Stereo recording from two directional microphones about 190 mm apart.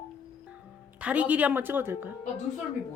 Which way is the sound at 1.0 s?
5° right (ahead or behind).